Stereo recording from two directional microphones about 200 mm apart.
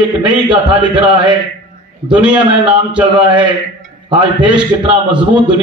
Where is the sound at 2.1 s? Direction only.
5° right (ahead or behind).